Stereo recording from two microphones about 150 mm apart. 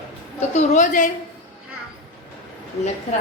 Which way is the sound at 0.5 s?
55° left (ahead or behind).